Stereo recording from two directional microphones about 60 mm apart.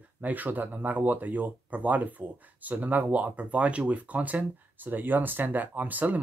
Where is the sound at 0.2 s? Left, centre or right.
Right.